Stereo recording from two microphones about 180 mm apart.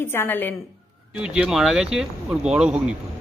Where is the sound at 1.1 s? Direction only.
5° right (ahead or behind).